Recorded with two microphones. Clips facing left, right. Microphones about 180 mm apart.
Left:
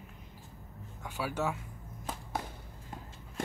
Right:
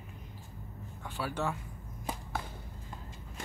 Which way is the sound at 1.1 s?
10° left (ahead or behind).